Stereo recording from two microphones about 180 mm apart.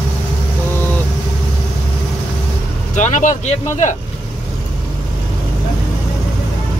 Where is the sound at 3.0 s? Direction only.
45° left (ahead or behind).